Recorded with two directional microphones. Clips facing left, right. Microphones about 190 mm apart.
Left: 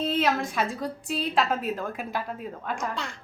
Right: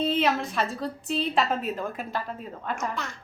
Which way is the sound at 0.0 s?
5° left (ahead or behind).